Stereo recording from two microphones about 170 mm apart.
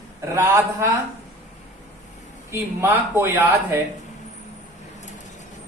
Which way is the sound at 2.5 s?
15° right (ahead or behind).